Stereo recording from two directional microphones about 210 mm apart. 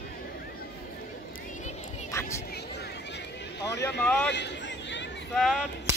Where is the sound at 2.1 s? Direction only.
15° left (ahead or behind).